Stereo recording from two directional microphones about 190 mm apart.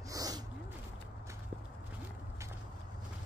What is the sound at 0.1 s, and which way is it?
Gasp, 20° right (ahead or behind).